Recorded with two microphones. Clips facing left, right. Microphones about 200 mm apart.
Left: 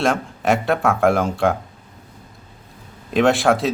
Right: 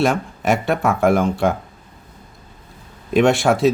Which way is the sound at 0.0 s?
Centre (ahead or behind).